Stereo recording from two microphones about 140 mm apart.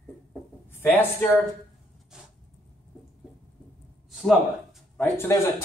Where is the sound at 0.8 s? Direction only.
15° left (ahead or behind).